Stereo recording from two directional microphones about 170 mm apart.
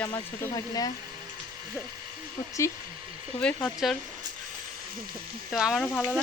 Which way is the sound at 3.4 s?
5° left (ahead or behind).